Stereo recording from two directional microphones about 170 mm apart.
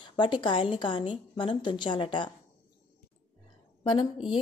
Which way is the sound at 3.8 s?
30° left (ahead or behind).